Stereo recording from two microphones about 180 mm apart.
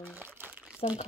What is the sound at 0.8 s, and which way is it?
Speech, 35° left (ahead or behind).